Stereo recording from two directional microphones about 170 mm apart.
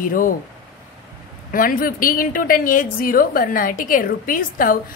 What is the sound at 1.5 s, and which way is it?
A woman's voice, 55° left (ahead or behind).